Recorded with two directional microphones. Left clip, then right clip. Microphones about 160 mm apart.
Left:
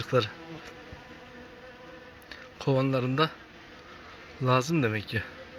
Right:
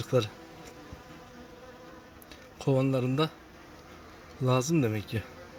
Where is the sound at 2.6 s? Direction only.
15° right (ahead or behind).